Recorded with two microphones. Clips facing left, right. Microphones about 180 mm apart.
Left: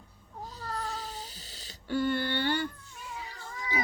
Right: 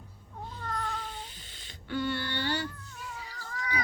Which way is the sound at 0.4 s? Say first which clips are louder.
Right 1 dB; 35° left (ahead or behind).